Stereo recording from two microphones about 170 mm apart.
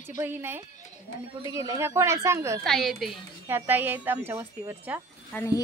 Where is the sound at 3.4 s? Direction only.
15° right (ahead or behind).